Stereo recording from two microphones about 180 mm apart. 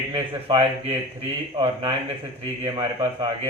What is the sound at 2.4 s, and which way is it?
Speech, 30° right (ahead or behind).